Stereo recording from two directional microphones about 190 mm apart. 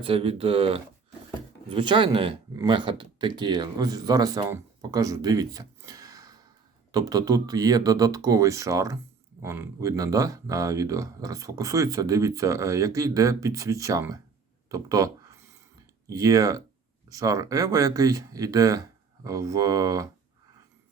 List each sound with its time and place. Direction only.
0.0 s speech: 30° right (ahead or behind)
14.7 s a sound: 20° right (ahead or behind)
16.0 s speech: 20° right (ahead or behind)